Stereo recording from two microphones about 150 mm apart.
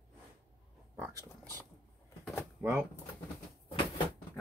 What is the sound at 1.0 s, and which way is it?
Speech, 20° right (ahead or behind).